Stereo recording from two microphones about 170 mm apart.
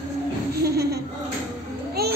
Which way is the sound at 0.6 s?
70° right (ahead or behind).